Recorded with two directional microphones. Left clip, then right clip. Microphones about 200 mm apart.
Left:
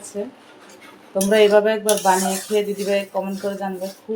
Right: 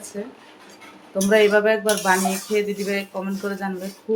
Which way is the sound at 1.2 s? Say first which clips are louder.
Left 2 dB; centre (ahead or behind).